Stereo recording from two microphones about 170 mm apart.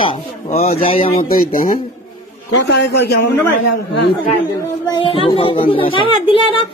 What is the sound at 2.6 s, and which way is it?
Speech, 90° left.